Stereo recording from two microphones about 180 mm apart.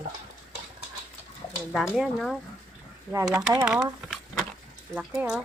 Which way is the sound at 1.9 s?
Centre (ahead or behind).